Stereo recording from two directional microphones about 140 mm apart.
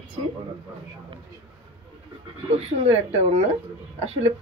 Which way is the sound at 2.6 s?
50° right (ahead or behind).